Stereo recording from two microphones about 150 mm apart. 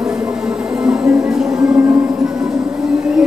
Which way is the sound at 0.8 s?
5° right (ahead or behind).